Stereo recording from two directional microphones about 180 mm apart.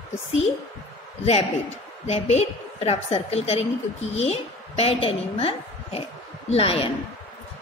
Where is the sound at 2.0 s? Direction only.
35° left (ahead or behind).